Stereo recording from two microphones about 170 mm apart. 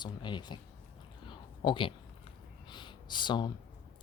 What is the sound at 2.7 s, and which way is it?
Speech, 25° left (ahead or behind).